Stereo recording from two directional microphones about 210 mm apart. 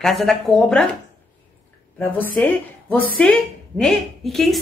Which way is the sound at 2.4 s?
5° left (ahead or behind).